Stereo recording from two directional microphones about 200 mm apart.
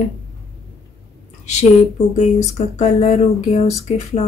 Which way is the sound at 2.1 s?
35° left (ahead or behind).